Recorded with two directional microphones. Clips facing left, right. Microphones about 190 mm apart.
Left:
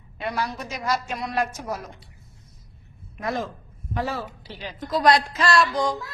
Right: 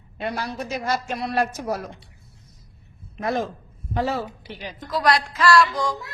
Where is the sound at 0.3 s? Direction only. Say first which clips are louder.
Right 1 dB; 30° right (ahead or behind).